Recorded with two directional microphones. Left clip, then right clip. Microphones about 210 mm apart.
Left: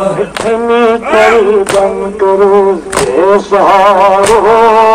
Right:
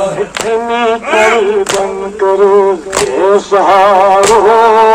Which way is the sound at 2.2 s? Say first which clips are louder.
Left 1 dB; centre (ahead or behind).